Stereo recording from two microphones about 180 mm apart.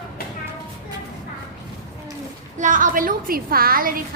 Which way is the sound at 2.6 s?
45° right (ahead or behind).